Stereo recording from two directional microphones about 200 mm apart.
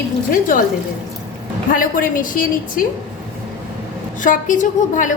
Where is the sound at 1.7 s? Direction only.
45° left (ahead or behind).